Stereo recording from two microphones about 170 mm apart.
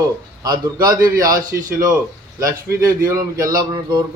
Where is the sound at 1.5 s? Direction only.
65° right (ahead or behind).